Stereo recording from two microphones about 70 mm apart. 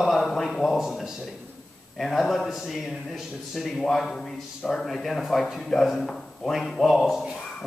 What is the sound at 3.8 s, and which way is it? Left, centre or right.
A man's voice, centre.